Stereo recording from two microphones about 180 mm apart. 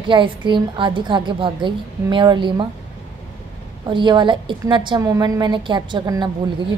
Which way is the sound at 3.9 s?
25° right (ahead or behind).